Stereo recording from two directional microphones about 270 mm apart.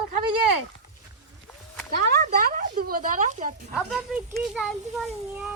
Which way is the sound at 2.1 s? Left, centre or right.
Right.